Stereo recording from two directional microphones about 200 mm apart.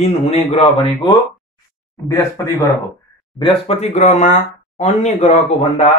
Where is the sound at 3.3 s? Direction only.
25° left (ahead or behind).